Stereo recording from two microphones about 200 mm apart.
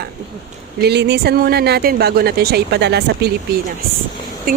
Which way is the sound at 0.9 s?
55° right (ahead or behind).